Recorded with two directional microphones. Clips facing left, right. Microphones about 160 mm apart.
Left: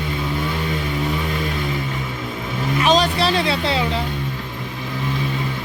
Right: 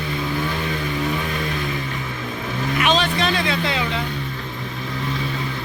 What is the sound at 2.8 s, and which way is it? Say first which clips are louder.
Vehicle: left 3 dB; 35° left (ahead or behind).